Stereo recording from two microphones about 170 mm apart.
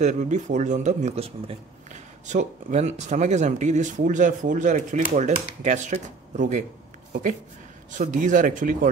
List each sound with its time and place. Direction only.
0.0 s speech: 45° right (ahead or behind)
8.0 s speech: 50° right (ahead or behind)